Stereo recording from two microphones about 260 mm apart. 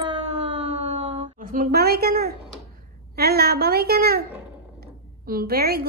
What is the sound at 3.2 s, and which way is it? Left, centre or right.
A woman's voice, right.